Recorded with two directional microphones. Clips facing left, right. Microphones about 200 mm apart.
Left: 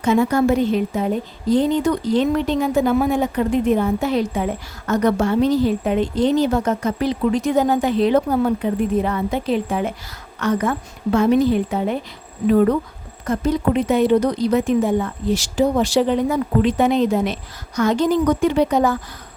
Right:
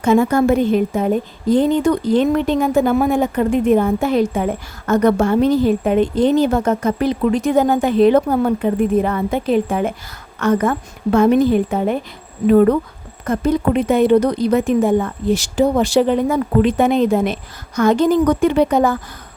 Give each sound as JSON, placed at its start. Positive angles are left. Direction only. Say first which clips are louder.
{"t": 0.0, "sound": "a woman's voice", "louder": "right 3 dB", "side_deg": -50}
{"t": 13.2, "sound": "a woman's voice", "louder": "right 2 dB", "side_deg": -55}